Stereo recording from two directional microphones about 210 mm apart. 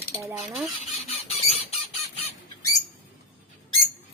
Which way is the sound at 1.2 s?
30° left (ahead or behind).